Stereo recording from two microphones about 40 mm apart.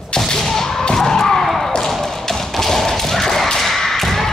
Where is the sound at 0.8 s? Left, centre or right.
Centre.